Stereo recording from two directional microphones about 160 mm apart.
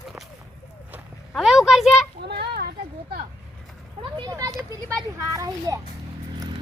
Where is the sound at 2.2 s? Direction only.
80° right.